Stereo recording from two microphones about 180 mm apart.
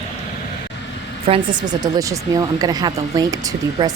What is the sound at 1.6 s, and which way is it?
Speech, 20° right (ahead or behind).